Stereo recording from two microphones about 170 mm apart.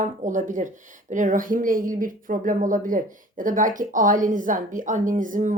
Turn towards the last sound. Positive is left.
turn(degrees=-50)  # may be behind; listen again after turning